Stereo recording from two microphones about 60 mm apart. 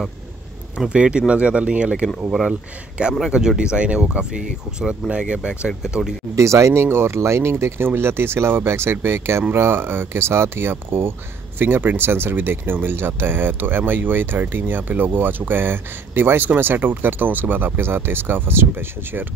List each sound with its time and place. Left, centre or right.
0.7 s speech: centre
3.2 s speech: centre
6.3 s speech: right